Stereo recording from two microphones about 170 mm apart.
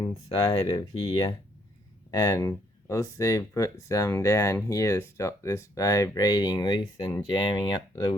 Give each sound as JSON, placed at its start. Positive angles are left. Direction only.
{"t": 0.0, "sound": "speech", "side_deg": 20}